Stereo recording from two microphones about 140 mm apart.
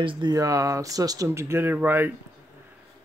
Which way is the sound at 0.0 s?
35° right (ahead or behind).